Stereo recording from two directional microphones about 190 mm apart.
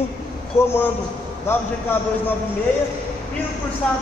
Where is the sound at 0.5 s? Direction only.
10° left (ahead or behind).